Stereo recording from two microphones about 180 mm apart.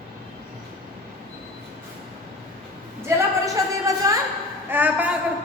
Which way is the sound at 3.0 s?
20° right (ahead or behind).